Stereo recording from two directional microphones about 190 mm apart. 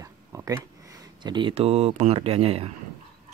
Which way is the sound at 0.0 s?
15° right (ahead or behind).